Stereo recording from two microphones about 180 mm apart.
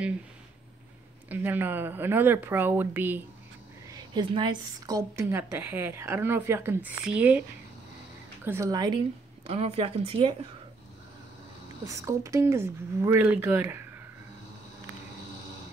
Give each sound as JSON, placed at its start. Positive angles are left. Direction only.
{"t": 1.3, "sound": "a woman's voice", "side_deg": -10}
{"t": 3.9, "sound": "a woman's voice", "side_deg": -25}
{"t": 8.5, "sound": "a woman's voice", "side_deg": -15}
{"t": 9.5, "sound": "speech", "side_deg": -35}
{"t": 11.9, "sound": "a woman's voice", "side_deg": -15}